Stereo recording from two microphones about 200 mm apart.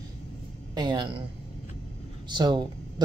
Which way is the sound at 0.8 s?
20° right (ahead or behind).